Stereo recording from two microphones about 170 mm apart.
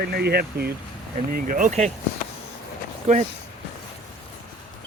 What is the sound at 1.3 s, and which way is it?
Speech, 50° right (ahead or behind).